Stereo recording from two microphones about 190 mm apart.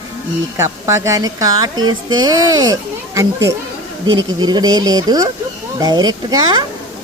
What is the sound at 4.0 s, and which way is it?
Speech, 25° right (ahead or behind).